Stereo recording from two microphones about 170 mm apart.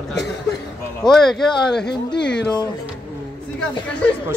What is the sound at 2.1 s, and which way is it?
Speech, 90° left.